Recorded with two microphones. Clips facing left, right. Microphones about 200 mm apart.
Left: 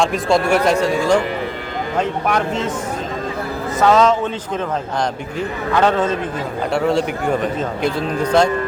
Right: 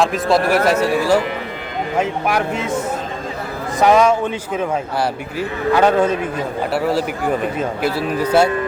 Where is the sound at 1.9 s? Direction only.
10° right (ahead or behind).